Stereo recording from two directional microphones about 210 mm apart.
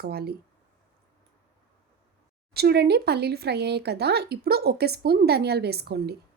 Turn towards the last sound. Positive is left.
turn(degrees=-50)  # may be behind; listen again after turning